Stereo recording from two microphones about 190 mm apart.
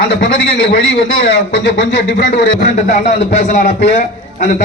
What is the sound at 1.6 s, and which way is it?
Speech, 70° left (ahead or behind).